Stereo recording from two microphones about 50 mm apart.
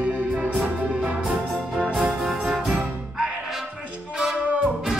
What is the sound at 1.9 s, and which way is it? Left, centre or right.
Music, centre.